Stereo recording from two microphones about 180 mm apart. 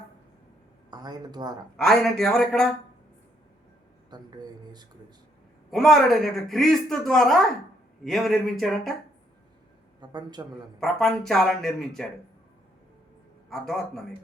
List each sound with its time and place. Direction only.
0.9 s speech: 20° right (ahead or behind)
1.7 s a woman's voice: 5° left (ahead or behind)
4.1 s speech: 25° right (ahead or behind)
5.7 s a woman's voice: centre (ahead or behind)
10.0 s speech: 25° right (ahead or behind)
10.8 s a woman's voice: 5° left (ahead or behind)
13.5 s a woman's voice: centre (ahead or behind)